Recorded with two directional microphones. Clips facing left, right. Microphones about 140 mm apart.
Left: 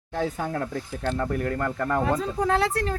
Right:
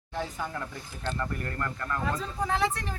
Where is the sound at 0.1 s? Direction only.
60° left (ahead or behind).